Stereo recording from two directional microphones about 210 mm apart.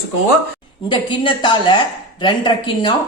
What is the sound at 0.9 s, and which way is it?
Speech, 20° left (ahead or behind).